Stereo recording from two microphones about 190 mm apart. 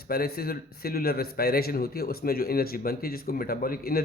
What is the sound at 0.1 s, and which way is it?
A man's voice, 55° left (ahead or behind).